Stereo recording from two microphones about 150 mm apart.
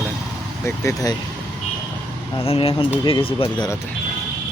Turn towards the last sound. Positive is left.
turn(degrees=35)  # may be behind; listen again after turning